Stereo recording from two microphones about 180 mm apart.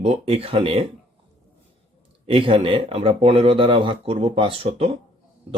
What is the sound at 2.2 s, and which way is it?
Speech, 30° right (ahead or behind).